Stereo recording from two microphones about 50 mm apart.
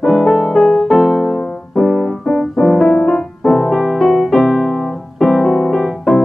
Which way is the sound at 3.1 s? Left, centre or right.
Centre.